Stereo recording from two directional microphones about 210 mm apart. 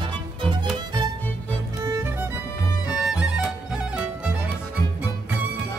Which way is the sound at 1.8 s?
15° right (ahead or behind).